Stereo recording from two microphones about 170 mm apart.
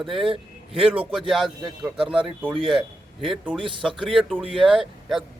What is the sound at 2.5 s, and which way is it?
Speech, 30° right (ahead or behind).